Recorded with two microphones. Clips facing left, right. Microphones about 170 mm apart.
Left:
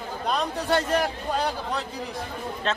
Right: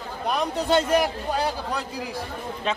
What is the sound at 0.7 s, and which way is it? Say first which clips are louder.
Speech: right 3 dB; 15° right (ahead or behind).